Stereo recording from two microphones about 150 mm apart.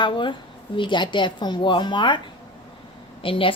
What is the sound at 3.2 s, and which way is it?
Speech, 35° left (ahead or behind).